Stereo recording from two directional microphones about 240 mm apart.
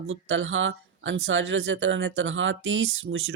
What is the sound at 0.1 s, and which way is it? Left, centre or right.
Speech, right.